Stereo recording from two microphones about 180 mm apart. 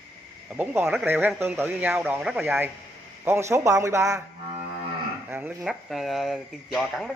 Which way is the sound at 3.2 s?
15° right (ahead or behind).